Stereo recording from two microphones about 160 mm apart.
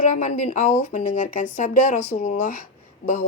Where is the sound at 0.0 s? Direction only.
50° left (ahead or behind).